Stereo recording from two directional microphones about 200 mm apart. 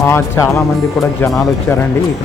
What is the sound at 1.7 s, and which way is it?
Speech, 10° left (ahead or behind).